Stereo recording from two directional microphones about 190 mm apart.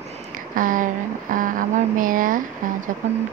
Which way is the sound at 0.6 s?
45° right (ahead or behind).